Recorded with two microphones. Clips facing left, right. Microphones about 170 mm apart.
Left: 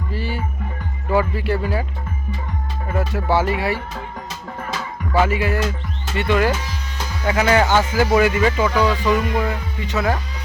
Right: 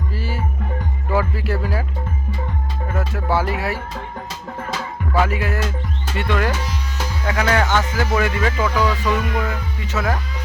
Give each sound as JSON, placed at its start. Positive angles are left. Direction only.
{"t": 0.1, "sound": "music", "side_deg": 0}
{"t": 1.1, "sound": "speech", "side_deg": 0}
{"t": 2.9, "sound": "speech", "side_deg": 0}
{"t": 5.1, "sound": "speech", "side_deg": 0}
{"t": 7.6, "sound": "music", "side_deg": 30}
{"t": 7.9, "sound": "speech", "side_deg": 10}